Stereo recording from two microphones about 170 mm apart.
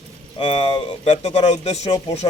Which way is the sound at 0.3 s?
35° left (ahead or behind).